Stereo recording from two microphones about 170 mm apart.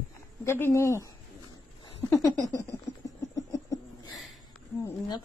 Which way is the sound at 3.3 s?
20° left (ahead or behind).